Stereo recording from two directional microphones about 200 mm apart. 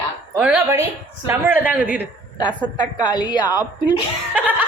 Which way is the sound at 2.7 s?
20° left (ahead or behind).